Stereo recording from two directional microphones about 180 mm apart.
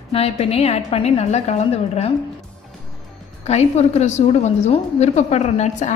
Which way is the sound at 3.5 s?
35° left (ahead or behind).